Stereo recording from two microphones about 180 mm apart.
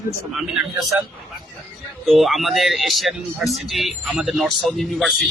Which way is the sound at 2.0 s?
Centre (ahead or behind).